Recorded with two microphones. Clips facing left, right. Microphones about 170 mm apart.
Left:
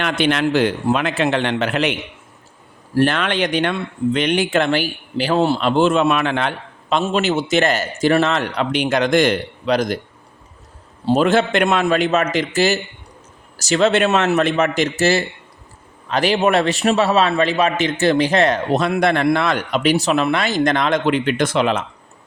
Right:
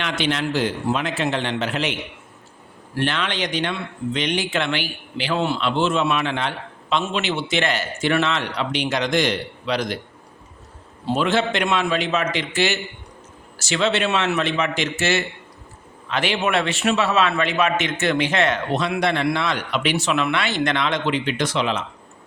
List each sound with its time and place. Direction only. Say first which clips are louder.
0.0 s a man's voice: left 5 dB; 55° left (ahead or behind)
2.9 s speech: left 7 dB; 45° left (ahead or behind)
6.9 s speech: left 5 dB; 40° left (ahead or behind)
11.0 s a man's voice: left 5 dB; 40° left (ahead or behind)